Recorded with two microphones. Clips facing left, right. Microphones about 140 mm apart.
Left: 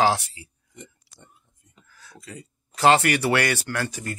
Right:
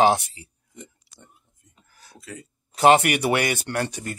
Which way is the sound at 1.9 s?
25° right (ahead or behind).